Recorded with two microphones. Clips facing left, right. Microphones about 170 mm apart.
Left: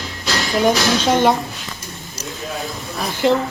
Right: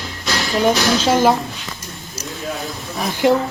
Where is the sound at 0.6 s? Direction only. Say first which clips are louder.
Right 1 dB; 5° right (ahead or behind).